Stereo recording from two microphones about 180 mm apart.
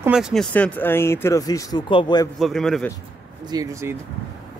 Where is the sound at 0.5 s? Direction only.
10° left (ahead or behind).